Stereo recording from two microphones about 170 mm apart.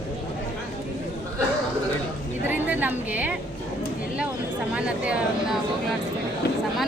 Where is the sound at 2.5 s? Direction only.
10° right (ahead or behind).